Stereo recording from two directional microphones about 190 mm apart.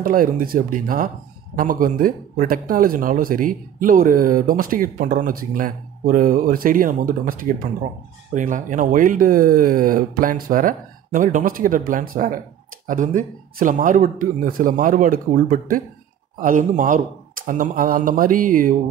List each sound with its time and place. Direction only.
0.0 s speech: 45° right (ahead or behind)
8.4 s speech: 45° right (ahead or behind)